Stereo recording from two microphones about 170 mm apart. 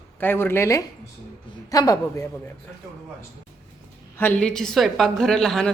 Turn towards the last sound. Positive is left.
turn(degrees=0)  # may be behind; listen again after turning